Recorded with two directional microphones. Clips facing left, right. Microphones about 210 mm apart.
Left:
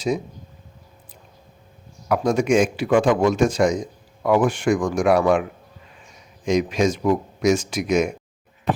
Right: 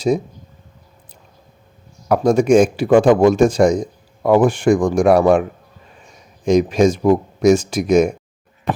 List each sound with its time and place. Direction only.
2.0 s speech: 35° right (ahead or behind)